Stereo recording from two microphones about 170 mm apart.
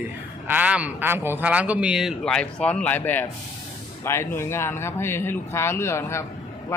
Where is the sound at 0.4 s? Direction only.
10° right (ahead or behind).